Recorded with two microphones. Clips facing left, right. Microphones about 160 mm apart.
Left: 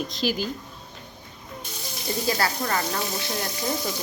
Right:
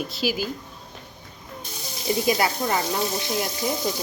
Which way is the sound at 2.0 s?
15° right (ahead or behind).